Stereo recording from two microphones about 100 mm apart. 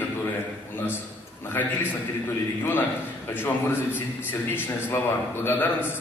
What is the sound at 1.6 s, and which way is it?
Speech, 20° left (ahead or behind).